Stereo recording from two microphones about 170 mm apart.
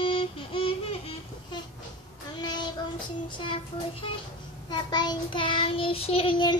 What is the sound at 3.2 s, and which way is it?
Child singing, 30° left (ahead or behind).